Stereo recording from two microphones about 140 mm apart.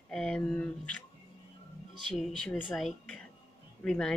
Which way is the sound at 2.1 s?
Centre (ahead or behind).